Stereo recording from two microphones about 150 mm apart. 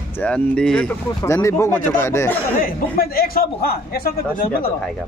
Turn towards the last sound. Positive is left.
turn(degrees=80)